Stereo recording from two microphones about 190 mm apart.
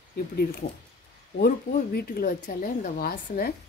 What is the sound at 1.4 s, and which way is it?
Speech, 50° left (ahead or behind).